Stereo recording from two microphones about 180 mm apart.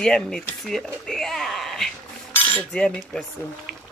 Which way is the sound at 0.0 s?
5° left (ahead or behind).